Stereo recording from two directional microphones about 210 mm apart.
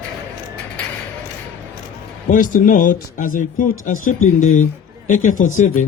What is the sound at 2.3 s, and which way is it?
Speech, 40° left (ahead or behind).